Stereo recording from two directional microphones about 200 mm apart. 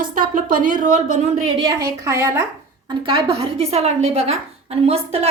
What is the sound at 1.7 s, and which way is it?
Speech, 15° right (ahead or behind).